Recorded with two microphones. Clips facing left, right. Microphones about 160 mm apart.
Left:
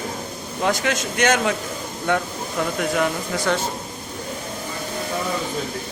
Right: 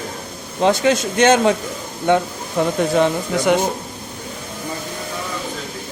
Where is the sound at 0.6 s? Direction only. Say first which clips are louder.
Right 6 dB; 25° right (ahead or behind).